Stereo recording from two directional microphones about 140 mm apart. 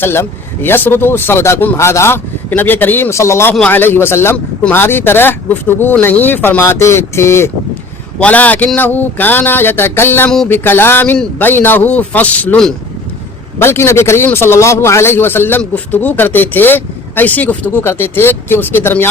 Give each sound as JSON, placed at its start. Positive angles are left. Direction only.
{"t": 0.0, "sound": "a man's voice", "side_deg": 15}